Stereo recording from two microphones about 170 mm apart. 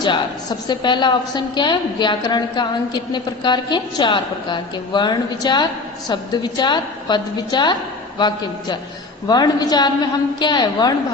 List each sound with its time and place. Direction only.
0.7 s a woman's voice: 25° left (ahead or behind)